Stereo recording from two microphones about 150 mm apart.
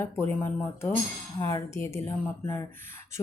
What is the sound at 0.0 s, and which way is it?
Speech, 15° left (ahead or behind).